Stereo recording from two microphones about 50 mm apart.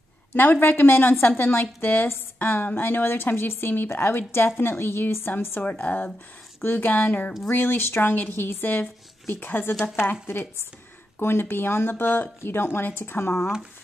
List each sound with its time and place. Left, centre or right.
0.3 s a woman's voice: left
5.6 s speech: left
6.6 s speech: left
7.4 s a woman's voice: left
11.1 s a woman's voice: left